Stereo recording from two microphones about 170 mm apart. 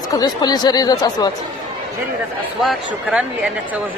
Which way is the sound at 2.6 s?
Centre (ahead or behind).